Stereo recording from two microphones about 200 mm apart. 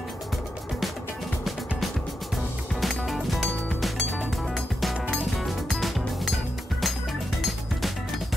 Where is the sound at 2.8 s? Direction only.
Centre (ahead or behind).